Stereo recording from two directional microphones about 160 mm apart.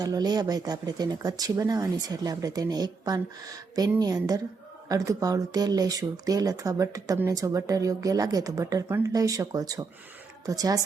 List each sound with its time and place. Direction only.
0.0 s speech: 25° right (ahead or behind)